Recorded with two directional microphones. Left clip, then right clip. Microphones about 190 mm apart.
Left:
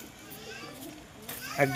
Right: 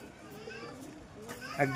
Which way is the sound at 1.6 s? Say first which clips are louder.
Left 4 dB; 30° left (ahead or behind).